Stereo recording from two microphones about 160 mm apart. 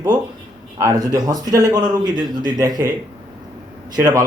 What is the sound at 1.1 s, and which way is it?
A man's voice, 25° right (ahead or behind).